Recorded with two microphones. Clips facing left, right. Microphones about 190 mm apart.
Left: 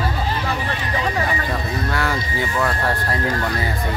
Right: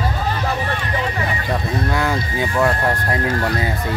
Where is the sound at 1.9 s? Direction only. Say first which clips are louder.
Right 2 dB; 15° right (ahead or behind).